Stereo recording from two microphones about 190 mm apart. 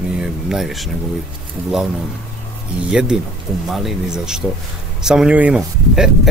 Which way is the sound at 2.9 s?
5° right (ahead or behind).